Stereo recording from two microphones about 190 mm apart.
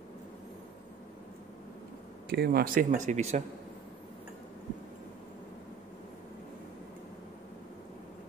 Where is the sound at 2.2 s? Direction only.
55° right (ahead or behind); by 3.4 s 35° right (ahead or behind).